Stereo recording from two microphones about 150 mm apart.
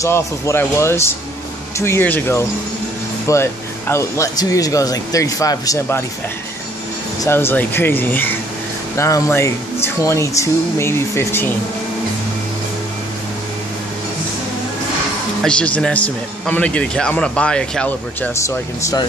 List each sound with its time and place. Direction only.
0.0 s a man's voice: 20° left (ahead or behind)
7.2 s a man's voice: 15° left (ahead or behind)
15.4 s a man's voice: 5° left (ahead or behind)